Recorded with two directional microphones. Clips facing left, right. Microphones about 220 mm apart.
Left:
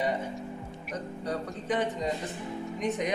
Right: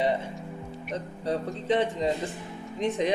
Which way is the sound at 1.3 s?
25° right (ahead or behind).